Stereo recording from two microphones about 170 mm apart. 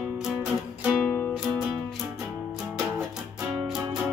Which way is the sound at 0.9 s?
10° left (ahead or behind).